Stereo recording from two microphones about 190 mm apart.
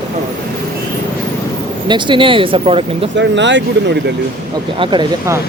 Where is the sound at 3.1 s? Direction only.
70° right (ahead or behind).